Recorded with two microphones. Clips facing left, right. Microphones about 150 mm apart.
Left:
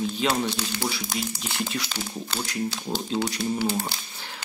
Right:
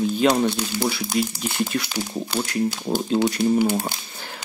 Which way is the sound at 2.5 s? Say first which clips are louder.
Right 6 dB; 55° right (ahead or behind).